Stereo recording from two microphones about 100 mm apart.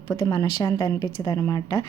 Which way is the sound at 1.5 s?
45° left (ahead or behind).